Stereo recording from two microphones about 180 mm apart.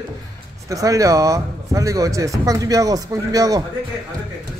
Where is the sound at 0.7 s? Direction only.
20° right (ahead or behind).